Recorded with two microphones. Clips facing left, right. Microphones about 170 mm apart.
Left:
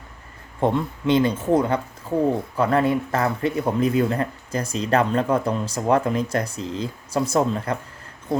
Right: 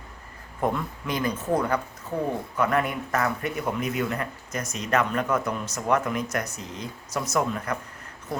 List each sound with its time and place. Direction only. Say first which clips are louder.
0.6 s speech: left 6 dB; 25° left (ahead or behind)